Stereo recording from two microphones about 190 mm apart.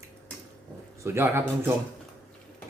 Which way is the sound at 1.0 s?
15° right (ahead or behind).